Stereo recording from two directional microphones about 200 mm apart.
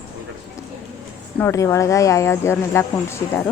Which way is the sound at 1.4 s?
15° left (ahead or behind).